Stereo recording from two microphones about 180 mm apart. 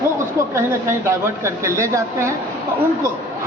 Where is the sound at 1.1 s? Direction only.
15° right (ahead or behind).